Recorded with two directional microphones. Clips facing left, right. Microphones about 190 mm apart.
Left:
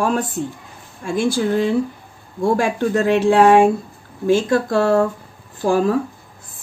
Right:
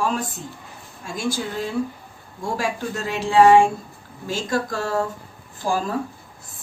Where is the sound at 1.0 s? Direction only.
60° left (ahead or behind).